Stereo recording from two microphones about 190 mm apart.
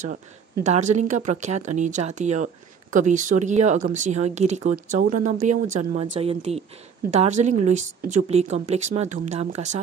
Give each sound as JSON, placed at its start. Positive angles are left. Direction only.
{"t": 0.7, "sound": "speech", "side_deg": -40}